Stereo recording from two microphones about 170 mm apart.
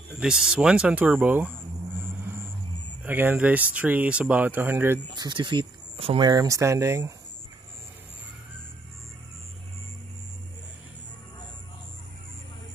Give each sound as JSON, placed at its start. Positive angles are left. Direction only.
{"t": 0.2, "sound": "speech", "side_deg": -5}
{"t": 3.0, "sound": "speech", "side_deg": -10}
{"t": 5.1, "sound": "speech", "side_deg": -25}
{"t": 6.2, "sound": "speech", "side_deg": -20}